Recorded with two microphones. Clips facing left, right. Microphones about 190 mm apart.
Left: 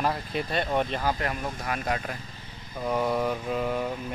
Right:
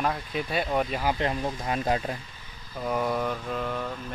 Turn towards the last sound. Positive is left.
turn(degrees=10)  # may be behind; listen again after turning